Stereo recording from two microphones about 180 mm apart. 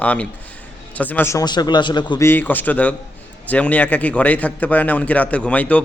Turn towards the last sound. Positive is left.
turn(degrees=10)  # may be behind; listen again after turning